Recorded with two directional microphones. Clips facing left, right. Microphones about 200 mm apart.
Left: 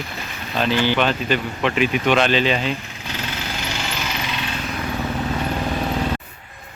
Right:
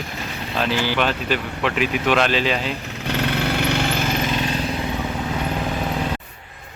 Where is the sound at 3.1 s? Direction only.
60° right (ahead or behind); by 4.8 s 35° right (ahead or behind).